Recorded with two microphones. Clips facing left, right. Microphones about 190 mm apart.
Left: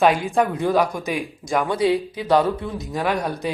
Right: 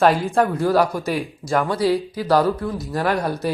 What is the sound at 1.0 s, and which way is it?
Speech, 15° left (ahead or behind).